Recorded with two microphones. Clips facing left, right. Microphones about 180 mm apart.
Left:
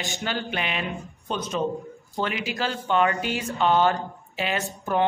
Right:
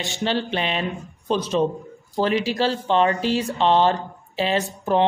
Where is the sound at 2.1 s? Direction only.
35° right (ahead or behind).